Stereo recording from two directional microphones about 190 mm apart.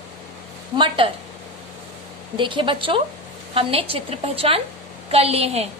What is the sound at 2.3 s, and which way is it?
A woman's voice, 25° right (ahead or behind).